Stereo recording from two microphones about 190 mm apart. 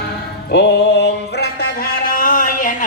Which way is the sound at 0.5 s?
65° left (ahead or behind).